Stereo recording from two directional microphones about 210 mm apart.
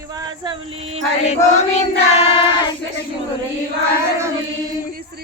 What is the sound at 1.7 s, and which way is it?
Child singing, 30° left (ahead or behind).